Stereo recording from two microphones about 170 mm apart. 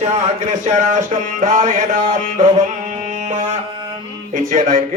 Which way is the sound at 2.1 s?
45° right (ahead or behind).